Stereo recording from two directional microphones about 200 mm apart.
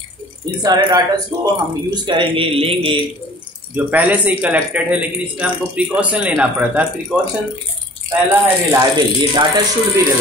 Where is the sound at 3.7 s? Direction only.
10° right (ahead or behind).